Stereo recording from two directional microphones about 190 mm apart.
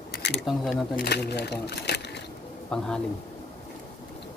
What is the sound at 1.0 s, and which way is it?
Speech, 60° left (ahead or behind).